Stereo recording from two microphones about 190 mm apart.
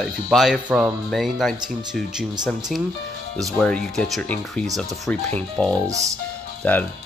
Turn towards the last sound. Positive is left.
turn(degrees=10)  # may be behind; listen again after turning